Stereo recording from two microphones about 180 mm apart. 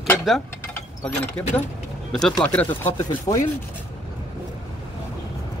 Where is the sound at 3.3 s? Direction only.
25° left (ahead or behind).